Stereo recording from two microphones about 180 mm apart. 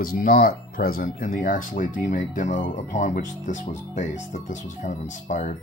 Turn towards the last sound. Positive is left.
turn(degrees=45)  # may be behind; listen again after turning